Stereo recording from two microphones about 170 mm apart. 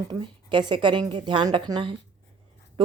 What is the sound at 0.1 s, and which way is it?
A woman's voice, 25° right (ahead or behind).